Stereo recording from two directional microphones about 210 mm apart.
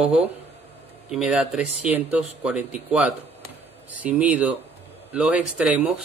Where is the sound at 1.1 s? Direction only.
5° right (ahead or behind).